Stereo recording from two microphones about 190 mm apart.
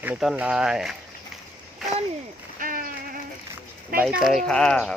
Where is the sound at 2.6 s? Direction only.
45° right (ahead or behind).